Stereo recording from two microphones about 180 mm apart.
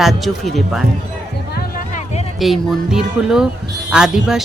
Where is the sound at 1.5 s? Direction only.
45° left (ahead or behind).